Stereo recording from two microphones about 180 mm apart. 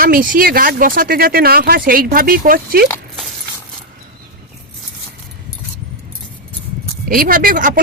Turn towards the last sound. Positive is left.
turn(degrees=-50)  # may be behind; listen again after turning